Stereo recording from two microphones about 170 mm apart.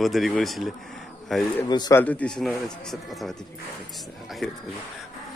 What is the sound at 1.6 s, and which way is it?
Speech, 20° left (ahead or behind).